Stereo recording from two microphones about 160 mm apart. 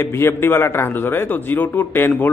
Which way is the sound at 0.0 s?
15° left (ahead or behind).